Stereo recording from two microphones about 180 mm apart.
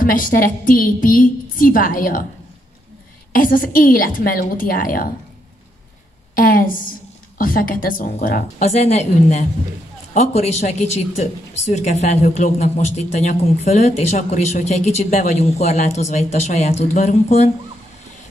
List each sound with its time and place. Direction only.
0.0 s a woman's voice: 50° left (ahead or behind)
3.3 s a woman's voice: 50° left (ahead or behind)
6.3 s a woman's voice: 50° left (ahead or behind)
8.5 s a woman's voice: 40° left (ahead or behind)